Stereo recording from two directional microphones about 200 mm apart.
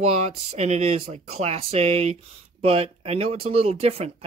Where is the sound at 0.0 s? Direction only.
30° right (ahead or behind).